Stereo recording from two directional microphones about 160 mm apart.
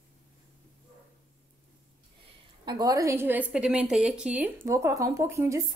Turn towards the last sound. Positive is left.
turn(degrees=-15)  # may be behind; listen again after turning